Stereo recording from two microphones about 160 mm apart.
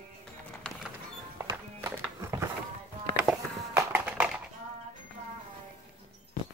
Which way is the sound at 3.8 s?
10° right (ahead or behind).